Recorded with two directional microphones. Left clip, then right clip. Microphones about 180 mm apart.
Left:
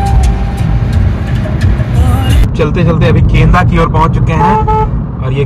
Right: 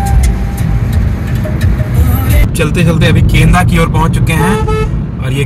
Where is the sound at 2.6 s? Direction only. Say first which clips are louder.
Left 1 dB; 15° right (ahead or behind).